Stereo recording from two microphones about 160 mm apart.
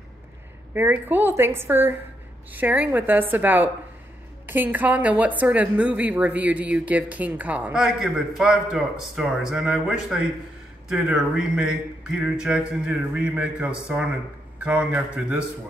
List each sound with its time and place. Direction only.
0.7 s a woman's voice: 10° right (ahead or behind)